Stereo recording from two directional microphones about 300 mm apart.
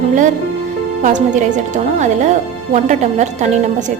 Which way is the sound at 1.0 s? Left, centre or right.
Right.